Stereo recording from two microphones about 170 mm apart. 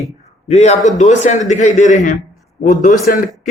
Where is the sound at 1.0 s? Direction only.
45° left (ahead or behind).